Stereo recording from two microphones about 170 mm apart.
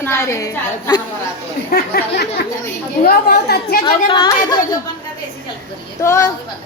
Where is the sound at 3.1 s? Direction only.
60° left (ahead or behind).